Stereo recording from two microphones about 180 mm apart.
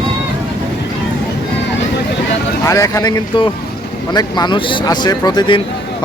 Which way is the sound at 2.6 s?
15° left (ahead or behind).